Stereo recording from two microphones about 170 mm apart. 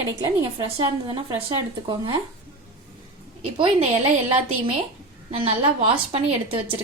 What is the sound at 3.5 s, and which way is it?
Speech, 30° right (ahead or behind).